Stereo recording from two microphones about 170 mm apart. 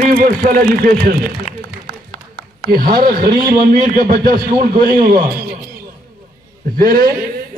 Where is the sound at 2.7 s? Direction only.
60° right (ahead or behind).